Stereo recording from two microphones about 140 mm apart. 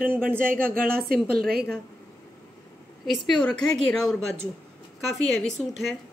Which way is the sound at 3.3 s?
5° left (ahead or behind).